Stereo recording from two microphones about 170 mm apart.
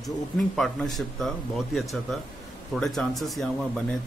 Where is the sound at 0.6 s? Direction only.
Centre (ahead or behind).